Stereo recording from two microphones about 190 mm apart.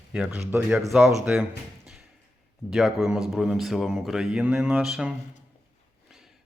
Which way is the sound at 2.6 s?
Centre (ahead or behind).